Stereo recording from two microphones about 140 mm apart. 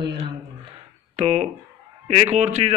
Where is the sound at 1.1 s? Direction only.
50° right (ahead or behind).